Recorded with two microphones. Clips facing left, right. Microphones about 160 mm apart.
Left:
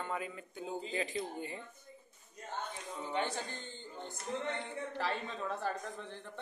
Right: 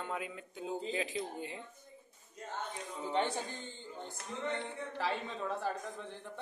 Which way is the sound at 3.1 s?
25° right (ahead or behind).